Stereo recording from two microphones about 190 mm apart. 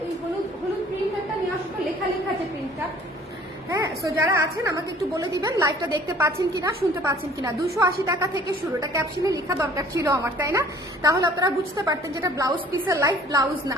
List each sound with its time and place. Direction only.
3.7 s a woman's voice: 15° right (ahead or behind)